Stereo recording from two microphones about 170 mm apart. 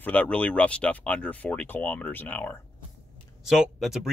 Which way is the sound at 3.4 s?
5° right (ahead or behind).